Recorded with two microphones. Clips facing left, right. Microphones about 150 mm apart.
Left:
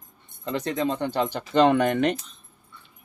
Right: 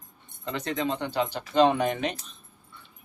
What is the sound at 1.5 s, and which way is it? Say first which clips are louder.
Speech: left 3 dB; 60° left (ahead or behind).